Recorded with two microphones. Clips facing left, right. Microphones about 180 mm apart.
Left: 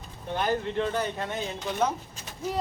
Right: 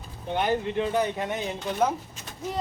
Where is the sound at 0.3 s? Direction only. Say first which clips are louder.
Right 2 dB; 10° right (ahead or behind).